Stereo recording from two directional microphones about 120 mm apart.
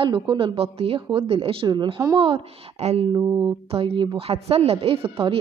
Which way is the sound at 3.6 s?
50° right (ahead or behind).